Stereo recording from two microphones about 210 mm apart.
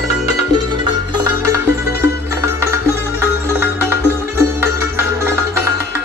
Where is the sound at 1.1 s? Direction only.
15° right (ahead or behind).